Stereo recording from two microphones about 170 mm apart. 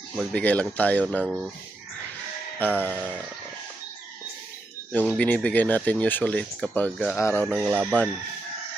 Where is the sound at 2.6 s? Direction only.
10° left (ahead or behind).